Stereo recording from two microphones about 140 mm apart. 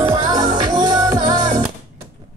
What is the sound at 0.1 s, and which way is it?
Music, 25° right (ahead or behind).